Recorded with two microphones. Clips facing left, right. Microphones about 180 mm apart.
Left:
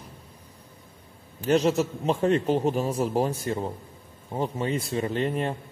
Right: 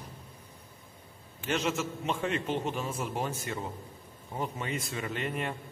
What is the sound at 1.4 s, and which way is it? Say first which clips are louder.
Speech: left 9 dB; 35° left (ahead or behind).